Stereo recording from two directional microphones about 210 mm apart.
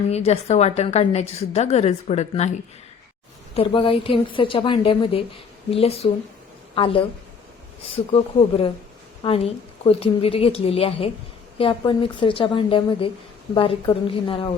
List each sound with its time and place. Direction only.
0.1 s a woman's voice: 30° left (ahead or behind)
8.1 s a woman's voice: 25° left (ahead or behind)